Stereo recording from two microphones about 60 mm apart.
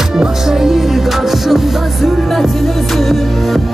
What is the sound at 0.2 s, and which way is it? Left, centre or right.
Music, centre.